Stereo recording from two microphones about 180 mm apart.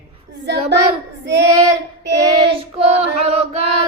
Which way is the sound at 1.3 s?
20° right (ahead or behind).